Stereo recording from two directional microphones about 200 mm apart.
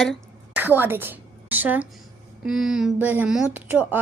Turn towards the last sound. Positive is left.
turn(degrees=-10)  # may be behind; listen again after turning